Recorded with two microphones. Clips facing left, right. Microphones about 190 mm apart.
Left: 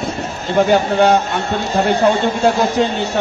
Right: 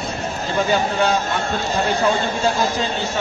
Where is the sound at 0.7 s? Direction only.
65° left (ahead or behind).